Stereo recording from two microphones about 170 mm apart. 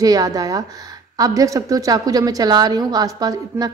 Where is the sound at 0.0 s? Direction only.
20° right (ahead or behind).